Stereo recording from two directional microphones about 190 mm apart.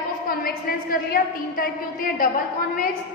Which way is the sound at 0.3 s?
50° left (ahead or behind).